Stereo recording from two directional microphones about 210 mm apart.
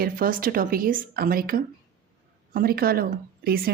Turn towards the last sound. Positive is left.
turn(degrees=-45)  # may be behind; listen again after turning